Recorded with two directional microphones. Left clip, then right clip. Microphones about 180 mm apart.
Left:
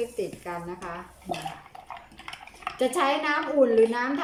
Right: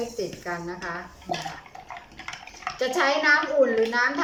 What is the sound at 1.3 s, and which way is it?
Bathtub, 5° left (ahead or behind).